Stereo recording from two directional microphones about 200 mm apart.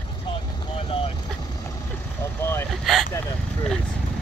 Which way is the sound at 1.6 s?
15° left (ahead or behind).